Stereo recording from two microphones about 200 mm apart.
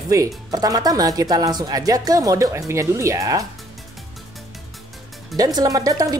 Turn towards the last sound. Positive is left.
turn(degrees=-20)  # may be behind; listen again after turning